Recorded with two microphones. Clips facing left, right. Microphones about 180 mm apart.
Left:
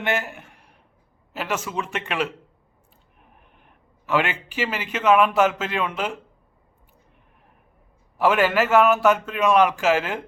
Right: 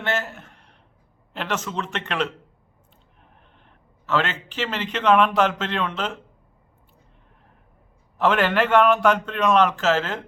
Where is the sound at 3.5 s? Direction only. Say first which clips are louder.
Even; 10° left (ahead or behind).